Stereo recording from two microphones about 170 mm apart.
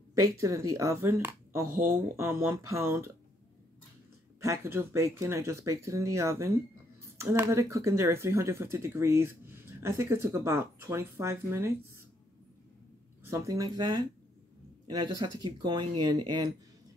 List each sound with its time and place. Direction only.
0.1 s speech: 20° right (ahead or behind)
1.7 s speech: 55° right (ahead or behind)
2.1 s speech: 15° right (ahead or behind)
4.4 s speech: 15° right (ahead or behind)
13.2 s speech: 20° right (ahead or behind)